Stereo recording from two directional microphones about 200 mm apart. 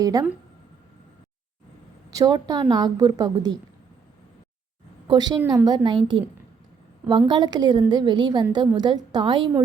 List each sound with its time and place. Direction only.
0.0 s speech: 15° right (ahead or behind)
2.0 s a woman's voice: 20° right (ahead or behind)
5.0 s a woman's voice: 20° right (ahead or behind)
7.1 s a woman's voice: 20° right (ahead or behind)